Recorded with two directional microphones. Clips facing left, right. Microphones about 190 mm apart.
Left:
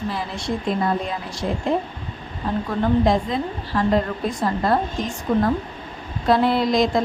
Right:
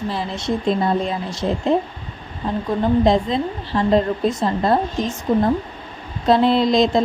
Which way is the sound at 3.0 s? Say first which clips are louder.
Right 3 dB; 25° right (ahead or behind).